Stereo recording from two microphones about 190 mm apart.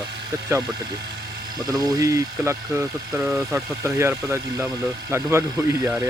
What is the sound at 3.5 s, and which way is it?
Speech, 15° right (ahead or behind).